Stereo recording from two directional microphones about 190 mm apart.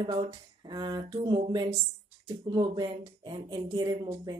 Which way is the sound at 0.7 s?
25° right (ahead or behind).